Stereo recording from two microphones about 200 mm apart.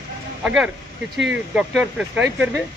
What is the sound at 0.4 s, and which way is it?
Speech, 5° right (ahead or behind).